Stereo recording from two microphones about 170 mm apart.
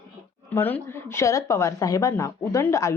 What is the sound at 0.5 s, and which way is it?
Speech, 15° left (ahead or behind).